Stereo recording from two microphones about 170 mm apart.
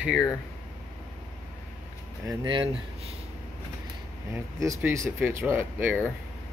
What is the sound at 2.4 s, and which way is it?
Speech, 30° right (ahead or behind).